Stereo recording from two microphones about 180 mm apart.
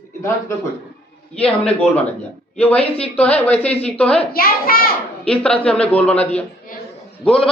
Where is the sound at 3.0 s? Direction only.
5° left (ahead or behind).